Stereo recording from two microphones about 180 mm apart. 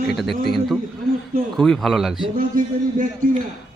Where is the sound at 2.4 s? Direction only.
50° right (ahead or behind).